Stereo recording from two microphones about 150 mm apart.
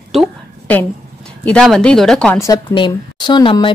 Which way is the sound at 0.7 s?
10° left (ahead or behind).